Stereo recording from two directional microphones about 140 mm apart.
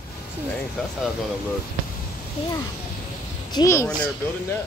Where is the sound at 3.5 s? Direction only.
20° left (ahead or behind).